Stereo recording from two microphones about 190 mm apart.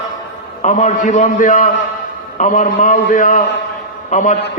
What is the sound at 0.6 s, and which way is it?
A man's voice, 40° left (ahead or behind).